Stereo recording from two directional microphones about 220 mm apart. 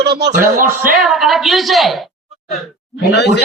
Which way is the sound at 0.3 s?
35° right (ahead or behind).